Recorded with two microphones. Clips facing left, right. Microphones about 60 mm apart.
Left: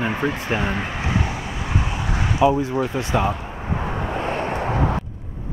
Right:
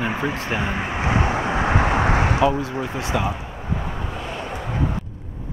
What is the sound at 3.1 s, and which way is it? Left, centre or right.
Speech, centre.